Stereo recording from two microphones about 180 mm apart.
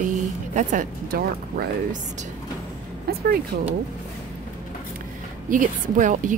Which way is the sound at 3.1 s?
60° right (ahead or behind).